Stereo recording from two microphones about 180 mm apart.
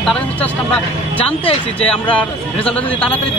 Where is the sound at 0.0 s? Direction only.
Centre (ahead or behind).